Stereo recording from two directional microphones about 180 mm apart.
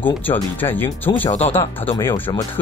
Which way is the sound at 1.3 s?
35° left (ahead or behind).